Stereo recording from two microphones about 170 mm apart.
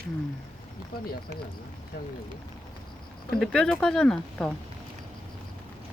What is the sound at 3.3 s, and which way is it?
Speech, 5° left (ahead or behind).